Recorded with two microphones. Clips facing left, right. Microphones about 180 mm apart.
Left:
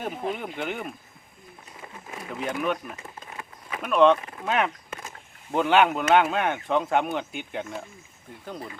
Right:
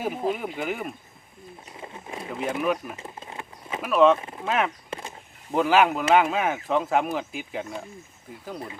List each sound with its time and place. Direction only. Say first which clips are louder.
0.0 s speech: right 3 dB; 5° right (ahead or behind)
1.7 s wild animals: right 3 dB; 25° right (ahead or behind)
2.3 s speech: right 2 dB; 5° right (ahead or behind)
2.8 s a sound: right 2 dB; 25° right (ahead or behind)
3.8 s speech: even; 5° right (ahead or behind)
4.2 s speech: right 2 dB; 25° right (ahead or behind)
4.4 s speech: even; centre (ahead or behind)
4.9 s a sound: right 4 dB; 30° right (ahead or behind)
5.5 s speech: even; centre (ahead or behind)